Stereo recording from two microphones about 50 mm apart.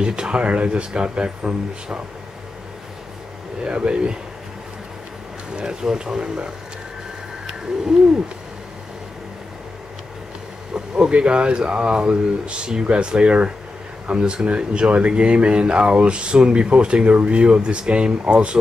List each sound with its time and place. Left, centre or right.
0.0 s speech: centre
3.6 s speech: right
5.6 s speech: centre
10.7 s speech: right